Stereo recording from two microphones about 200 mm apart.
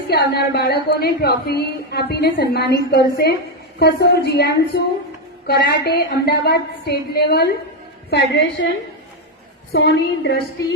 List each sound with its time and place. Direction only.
0.1 s a woman's voice: 50° left (ahead or behind)
9.7 s a woman's voice: 60° left (ahead or behind)